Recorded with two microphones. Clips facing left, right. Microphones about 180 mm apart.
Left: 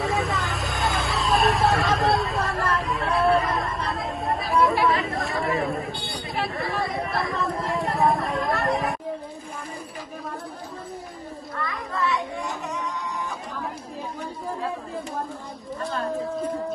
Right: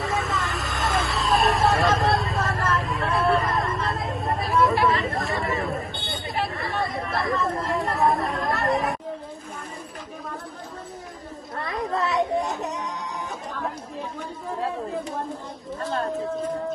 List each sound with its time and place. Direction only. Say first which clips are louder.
0.0 s vehicle: left 1 dB; centre (ahead or behind)
12.4 s music: right 1 dB; 40° right (ahead or behind)